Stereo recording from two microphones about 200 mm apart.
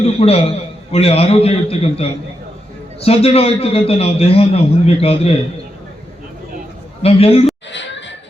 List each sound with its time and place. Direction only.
0.0 s a man's voice: 30° left (ahead or behind)
7.0 s a man's voice: 30° left (ahead or behind)
7.7 s music: 65° left (ahead or behind)